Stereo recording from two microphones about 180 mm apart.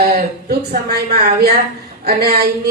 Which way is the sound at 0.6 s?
60° right (ahead or behind).